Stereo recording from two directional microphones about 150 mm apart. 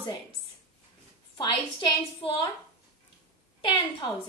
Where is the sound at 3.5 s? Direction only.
30° left (ahead or behind).